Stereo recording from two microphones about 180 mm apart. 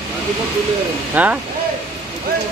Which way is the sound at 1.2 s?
10° right (ahead or behind).